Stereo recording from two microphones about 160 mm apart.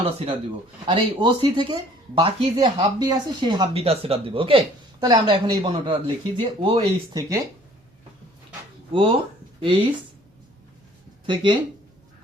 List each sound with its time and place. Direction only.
0.0 s speech: 35° right (ahead or behind)
5.0 s speech: 25° right (ahead or behind)
7.1 s speech: 20° right (ahead or behind)
8.9 s speech: 30° right (ahead or behind)